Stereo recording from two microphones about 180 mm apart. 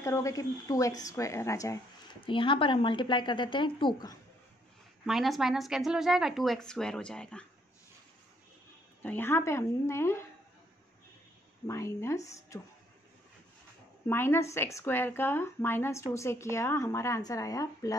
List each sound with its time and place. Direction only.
0.0 s a woman's voice: 15° left (ahead or behind)
5.0 s speech: centre (ahead or behind)
9.0 s speech: 10° left (ahead or behind)
11.6 s speech: 15° left (ahead or behind)
14.0 s speech: 10° left (ahead or behind)